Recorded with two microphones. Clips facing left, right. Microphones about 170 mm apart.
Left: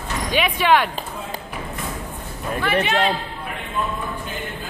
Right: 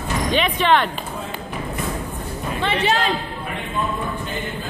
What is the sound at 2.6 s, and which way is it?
Speech, 30° right (ahead or behind).